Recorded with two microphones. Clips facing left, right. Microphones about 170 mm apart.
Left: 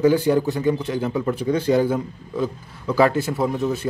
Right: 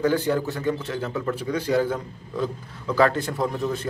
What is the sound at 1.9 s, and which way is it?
A man's voice, 5° left (ahead or behind).